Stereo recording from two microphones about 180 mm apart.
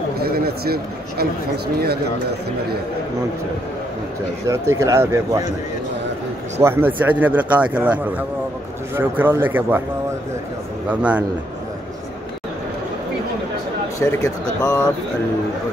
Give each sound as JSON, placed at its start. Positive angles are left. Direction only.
{"t": 0.2, "sound": "a sound", "side_deg": -60}
{"t": 4.5, "sound": "speech", "side_deg": -15}
{"t": 6.6, "sound": "speech", "side_deg": -10}
{"t": 10.9, "sound": "speech", "side_deg": -10}
{"t": 13.9, "sound": "speech", "side_deg": 20}